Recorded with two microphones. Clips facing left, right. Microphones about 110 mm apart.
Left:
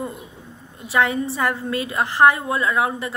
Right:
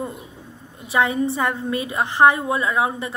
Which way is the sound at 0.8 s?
20° right (ahead or behind).